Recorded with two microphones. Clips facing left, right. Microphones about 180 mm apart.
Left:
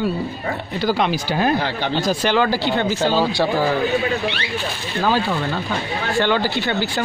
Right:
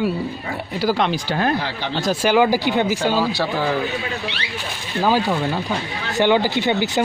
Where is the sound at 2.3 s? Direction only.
15° right (ahead or behind).